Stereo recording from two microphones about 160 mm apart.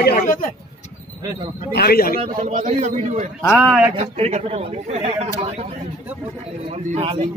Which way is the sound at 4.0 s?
40° right (ahead or behind).